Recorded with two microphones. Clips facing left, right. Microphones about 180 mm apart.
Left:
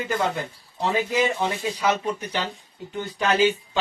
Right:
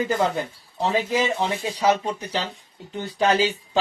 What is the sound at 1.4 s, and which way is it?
Speech, 35° right (ahead or behind).